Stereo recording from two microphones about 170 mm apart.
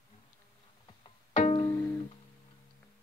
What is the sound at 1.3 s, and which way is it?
Music, 40° left (ahead or behind).